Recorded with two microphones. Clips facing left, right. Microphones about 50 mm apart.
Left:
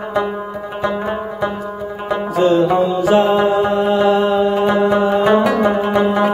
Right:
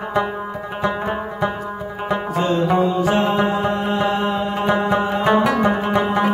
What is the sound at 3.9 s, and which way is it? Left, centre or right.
Mantra, left.